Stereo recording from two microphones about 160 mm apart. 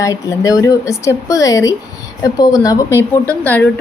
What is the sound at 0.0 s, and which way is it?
A woman's voice, 20° left (ahead or behind).